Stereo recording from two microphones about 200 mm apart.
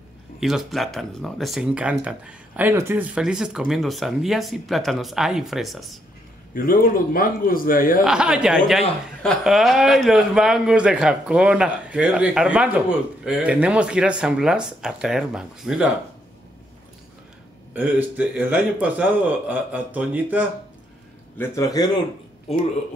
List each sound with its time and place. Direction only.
0.4 s speech: centre (ahead or behind)
6.5 s a man's voice: 45° left (ahead or behind)
8.0 s speech: 5° right (ahead or behind)
17.7 s a man's voice: 10° right (ahead or behind)
21.4 s a man's voice: 15° left (ahead or behind)